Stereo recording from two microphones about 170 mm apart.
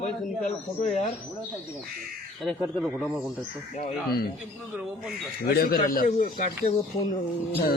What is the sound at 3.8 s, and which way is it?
Speech, 60° left (ahead or behind).